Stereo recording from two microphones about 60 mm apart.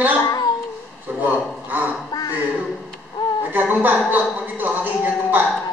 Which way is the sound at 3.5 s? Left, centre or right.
Right.